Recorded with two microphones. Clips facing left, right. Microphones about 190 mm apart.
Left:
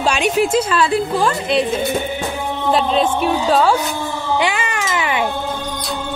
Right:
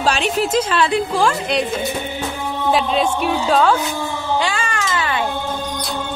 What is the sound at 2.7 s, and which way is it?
A woman's voice, centre (ahead or behind).